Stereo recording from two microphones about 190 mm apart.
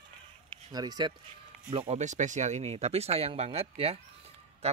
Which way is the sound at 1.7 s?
35° right (ahead or behind).